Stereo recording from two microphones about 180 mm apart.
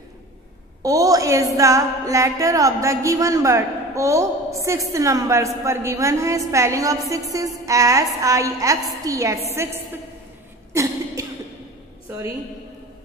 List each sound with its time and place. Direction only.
0.8 s music: 20° right (ahead or behind)
7.3 s a woman's voice: 20° right (ahead or behind)
9.0 s music: 15° right (ahead or behind)
10.7 s a sound: 15° right (ahead or behind)